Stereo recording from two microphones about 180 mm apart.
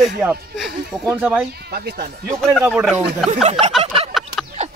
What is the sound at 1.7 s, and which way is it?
Speech, 65° right (ahead or behind).